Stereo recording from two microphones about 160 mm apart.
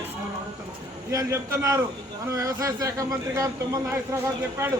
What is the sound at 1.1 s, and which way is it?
A man's voice, 20° right (ahead or behind).